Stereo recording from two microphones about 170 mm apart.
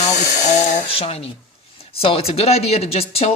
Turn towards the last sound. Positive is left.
turn(degrees=35)  # may be behind; listen again after turning